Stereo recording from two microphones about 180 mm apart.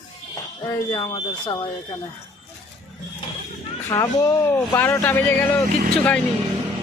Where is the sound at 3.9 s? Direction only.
20° left (ahead or behind).